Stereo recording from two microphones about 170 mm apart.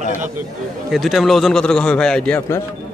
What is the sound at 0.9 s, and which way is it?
A man's voice, centre (ahead or behind).